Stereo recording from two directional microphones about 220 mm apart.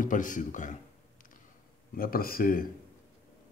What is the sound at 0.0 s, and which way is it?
Speech, 35° left (ahead or behind).